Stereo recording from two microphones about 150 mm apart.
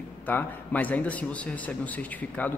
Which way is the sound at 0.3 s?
10° left (ahead or behind).